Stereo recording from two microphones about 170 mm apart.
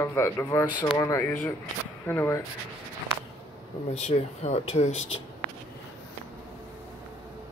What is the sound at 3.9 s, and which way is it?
Speech, 40° left (ahead or behind).